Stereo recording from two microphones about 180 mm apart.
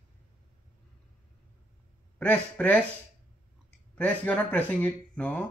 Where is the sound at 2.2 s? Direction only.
10° left (ahead or behind).